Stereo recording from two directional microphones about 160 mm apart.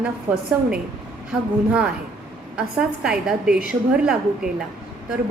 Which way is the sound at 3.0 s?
5° right (ahead or behind).